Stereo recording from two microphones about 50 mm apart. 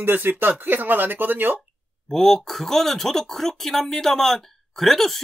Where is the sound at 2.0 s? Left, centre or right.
Centre.